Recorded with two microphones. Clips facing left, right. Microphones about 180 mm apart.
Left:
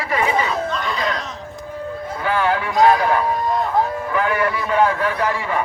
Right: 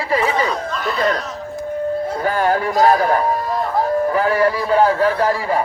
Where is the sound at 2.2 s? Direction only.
40° right (ahead or behind).